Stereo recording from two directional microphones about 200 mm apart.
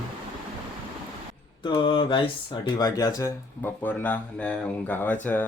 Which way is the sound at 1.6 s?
25° left (ahead or behind).